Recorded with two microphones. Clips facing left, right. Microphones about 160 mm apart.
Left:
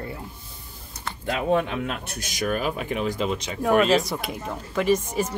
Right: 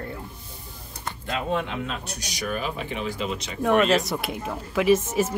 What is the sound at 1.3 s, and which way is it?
Speech, 55° left (ahead or behind).